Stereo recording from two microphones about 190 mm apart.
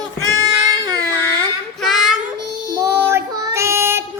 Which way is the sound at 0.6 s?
20° right (ahead or behind).